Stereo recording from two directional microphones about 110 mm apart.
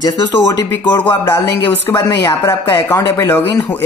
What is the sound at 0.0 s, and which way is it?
Speech, 35° left (ahead or behind).